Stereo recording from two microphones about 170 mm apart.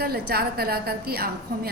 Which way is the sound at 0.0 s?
65° right (ahead or behind).